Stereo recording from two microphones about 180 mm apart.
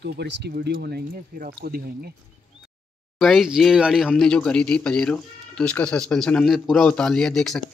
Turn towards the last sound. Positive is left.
turn(degrees=0)  # may be behind; listen again after turning